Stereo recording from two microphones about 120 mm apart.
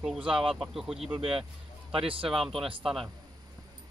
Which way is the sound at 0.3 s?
Centre (ahead or behind).